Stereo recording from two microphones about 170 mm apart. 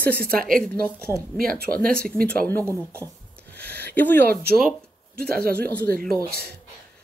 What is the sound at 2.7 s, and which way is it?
Speech, 15° right (ahead or behind).